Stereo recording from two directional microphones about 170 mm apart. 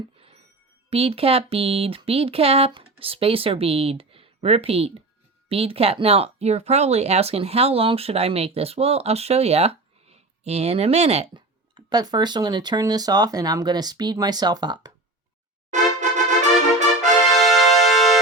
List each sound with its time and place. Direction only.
0.9 s speech: 35° right (ahead or behind)
15.7 s music: 45° right (ahead or behind)
17.3 s music: centre (ahead or behind)